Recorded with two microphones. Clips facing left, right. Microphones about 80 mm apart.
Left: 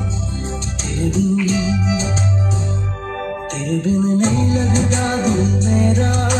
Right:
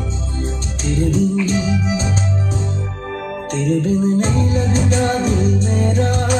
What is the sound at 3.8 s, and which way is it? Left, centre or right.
Music, right.